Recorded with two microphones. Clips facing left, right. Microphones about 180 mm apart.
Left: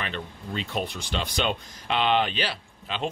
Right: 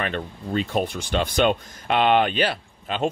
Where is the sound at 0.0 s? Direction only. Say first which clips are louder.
Right 6 dB; 50° right (ahead or behind).